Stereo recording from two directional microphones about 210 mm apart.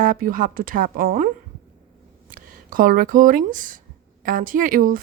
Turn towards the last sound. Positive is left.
turn(degrees=-40)  # may be behind; listen again after turning